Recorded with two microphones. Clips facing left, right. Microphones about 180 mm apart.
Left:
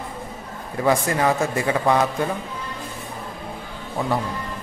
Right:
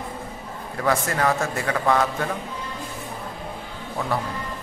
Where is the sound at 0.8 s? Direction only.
15° left (ahead or behind).